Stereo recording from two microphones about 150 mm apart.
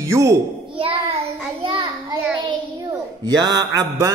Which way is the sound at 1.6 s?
30° right (ahead or behind).